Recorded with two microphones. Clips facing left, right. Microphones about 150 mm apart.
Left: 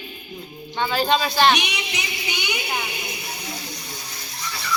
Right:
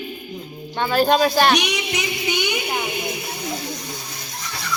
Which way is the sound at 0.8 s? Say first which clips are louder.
Right 4 dB; 50° right (ahead or behind).